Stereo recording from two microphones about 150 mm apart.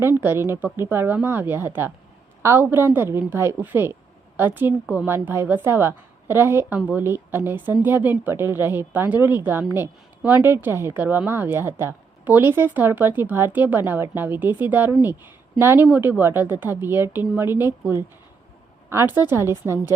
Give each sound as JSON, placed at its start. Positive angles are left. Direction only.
{"t": 0.0, "sound": "a woman's voice", "side_deg": -15}